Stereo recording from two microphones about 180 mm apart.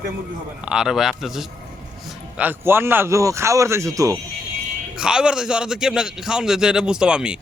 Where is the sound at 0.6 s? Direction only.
5° right (ahead or behind).